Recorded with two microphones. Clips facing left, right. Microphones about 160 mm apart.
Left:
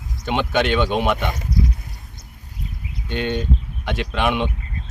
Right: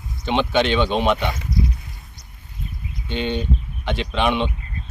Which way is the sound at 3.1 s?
5° left (ahead or behind).